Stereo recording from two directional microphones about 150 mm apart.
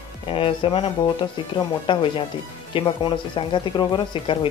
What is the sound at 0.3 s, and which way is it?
Speech, 35° left (ahead or behind).